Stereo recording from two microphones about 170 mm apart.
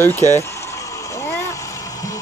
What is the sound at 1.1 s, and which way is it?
Vehicle, 15° left (ahead or behind).